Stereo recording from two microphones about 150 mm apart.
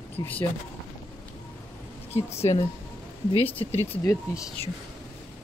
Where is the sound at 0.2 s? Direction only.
25° left (ahead or behind).